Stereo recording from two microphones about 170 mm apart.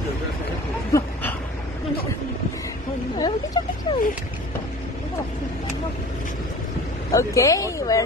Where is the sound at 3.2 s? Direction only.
25° left (ahead or behind).